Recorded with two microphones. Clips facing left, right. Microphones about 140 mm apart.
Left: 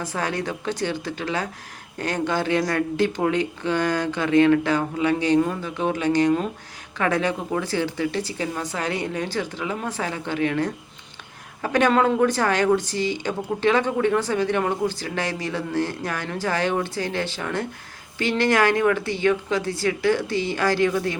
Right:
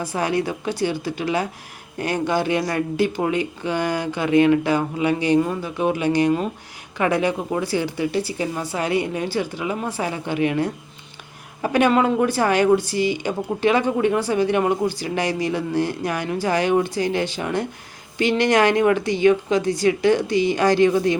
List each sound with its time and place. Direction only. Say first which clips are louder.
0.0 s a woman's voice: right 4 dB; 15° right (ahead or behind)